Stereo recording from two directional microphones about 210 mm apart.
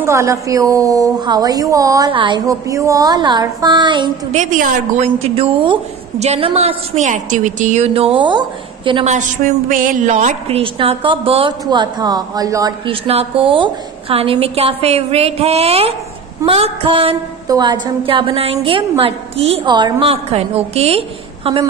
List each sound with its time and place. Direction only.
0.0 s a woman's voice: 15° right (ahead or behind)
4.4 s a woman's voice: 40° right (ahead or behind)